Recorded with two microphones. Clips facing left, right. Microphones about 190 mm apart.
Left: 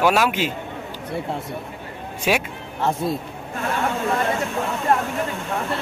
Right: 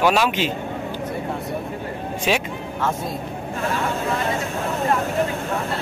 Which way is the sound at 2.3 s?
10° left (ahead or behind).